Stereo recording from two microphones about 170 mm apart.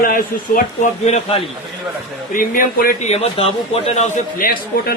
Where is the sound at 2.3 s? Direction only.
55° left (ahead or behind).